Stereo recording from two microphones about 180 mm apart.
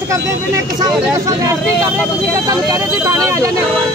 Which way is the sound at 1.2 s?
15° right (ahead or behind).